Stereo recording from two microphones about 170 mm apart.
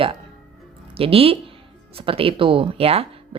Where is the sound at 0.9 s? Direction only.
35° right (ahead or behind).